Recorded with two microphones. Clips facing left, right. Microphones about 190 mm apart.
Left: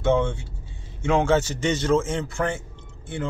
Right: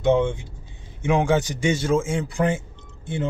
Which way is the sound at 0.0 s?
20° right (ahead or behind).